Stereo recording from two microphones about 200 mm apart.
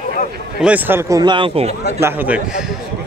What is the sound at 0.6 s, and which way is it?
Speech, 10° right (ahead or behind).